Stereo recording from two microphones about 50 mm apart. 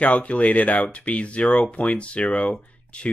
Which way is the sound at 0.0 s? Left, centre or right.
Left.